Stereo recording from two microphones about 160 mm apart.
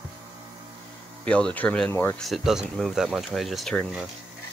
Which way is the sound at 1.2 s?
5° left (ahead or behind).